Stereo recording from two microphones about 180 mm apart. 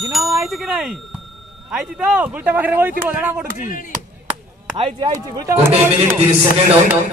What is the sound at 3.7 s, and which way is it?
Speech, 45° left (ahead or behind).